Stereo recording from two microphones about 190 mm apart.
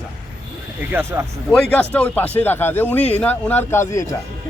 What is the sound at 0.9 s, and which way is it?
Speech, 10° right (ahead or behind).